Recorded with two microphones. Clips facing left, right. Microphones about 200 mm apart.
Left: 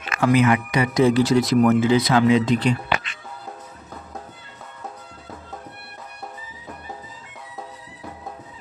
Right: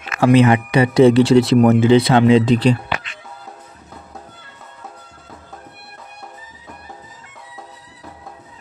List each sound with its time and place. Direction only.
0.2 s speech: 30° right (ahead or behind)